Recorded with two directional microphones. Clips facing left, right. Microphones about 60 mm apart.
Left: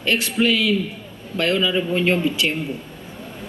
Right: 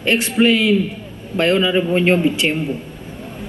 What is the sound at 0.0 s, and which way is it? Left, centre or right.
Speech, right.